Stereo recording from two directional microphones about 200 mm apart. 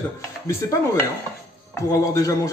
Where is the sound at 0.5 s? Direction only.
15° left (ahead or behind).